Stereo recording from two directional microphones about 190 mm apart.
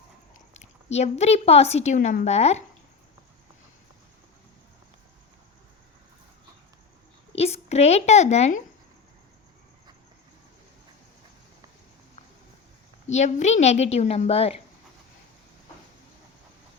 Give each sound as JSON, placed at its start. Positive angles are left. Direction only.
{"t": 0.5, "sound": "a woman's voice", "side_deg": 35}
{"t": 7.3, "sound": "a woman's voice", "side_deg": 35}
{"t": 13.1, "sound": "a woman's voice", "side_deg": 35}